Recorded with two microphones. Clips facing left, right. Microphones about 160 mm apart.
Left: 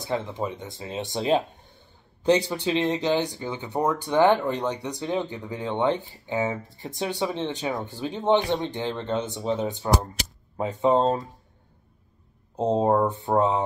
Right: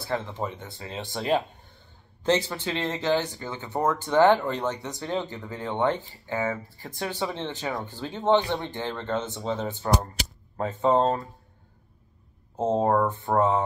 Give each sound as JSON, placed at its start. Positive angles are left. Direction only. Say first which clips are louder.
{"t": 0.0, "sound": "speech", "louder": "left 2 dB", "side_deg": 15}
{"t": 12.5, "sound": "speech", "louder": "left 1 dB", "side_deg": 15}